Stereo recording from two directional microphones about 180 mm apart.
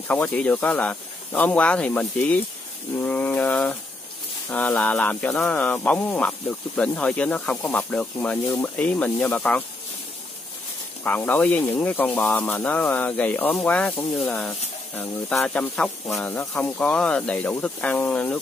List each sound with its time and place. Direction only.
0.1 s speech: 10° left (ahead or behind)
11.1 s speech: 10° left (ahead or behind)